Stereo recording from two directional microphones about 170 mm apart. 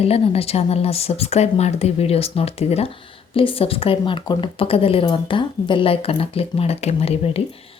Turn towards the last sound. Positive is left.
turn(degrees=35)  # may be behind; listen again after turning